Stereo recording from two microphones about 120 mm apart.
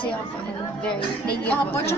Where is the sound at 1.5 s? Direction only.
20° left (ahead or behind).